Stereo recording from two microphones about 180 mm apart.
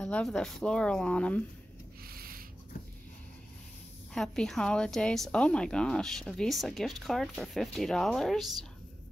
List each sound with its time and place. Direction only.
0.0 s a woman's voice: 5° left (ahead or behind)
2.0 s a sound: 55° right (ahead or behind)
4.1 s a woman's voice: centre (ahead or behind)